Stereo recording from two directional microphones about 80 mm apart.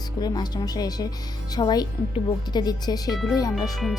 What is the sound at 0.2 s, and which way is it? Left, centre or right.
Speech, left.